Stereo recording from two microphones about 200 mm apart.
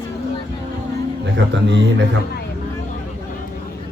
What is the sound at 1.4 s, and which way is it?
Speech, 65° right (ahead or behind).